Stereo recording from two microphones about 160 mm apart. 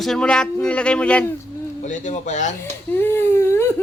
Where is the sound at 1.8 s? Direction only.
50° left (ahead or behind).